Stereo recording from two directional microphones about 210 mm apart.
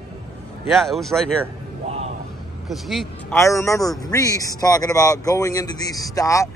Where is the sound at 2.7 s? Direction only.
Centre (ahead or behind).